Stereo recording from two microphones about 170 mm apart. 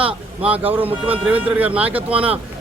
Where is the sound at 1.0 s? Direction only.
10° right (ahead or behind).